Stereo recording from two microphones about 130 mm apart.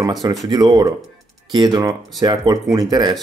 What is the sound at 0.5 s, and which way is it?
Speech, 30° right (ahead or behind).